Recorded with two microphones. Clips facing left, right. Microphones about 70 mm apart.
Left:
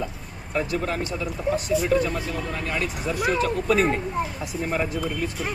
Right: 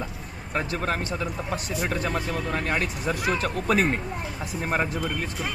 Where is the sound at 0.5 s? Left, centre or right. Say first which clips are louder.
Left 2 dB; right.